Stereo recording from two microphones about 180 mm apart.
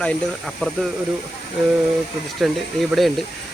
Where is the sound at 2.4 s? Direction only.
Centre (ahead or behind).